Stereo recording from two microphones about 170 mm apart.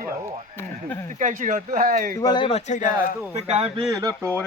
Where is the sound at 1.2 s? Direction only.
50° right (ahead or behind).